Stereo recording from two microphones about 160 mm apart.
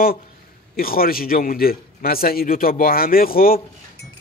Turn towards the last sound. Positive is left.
turn(degrees=65)  # may be behind; listen again after turning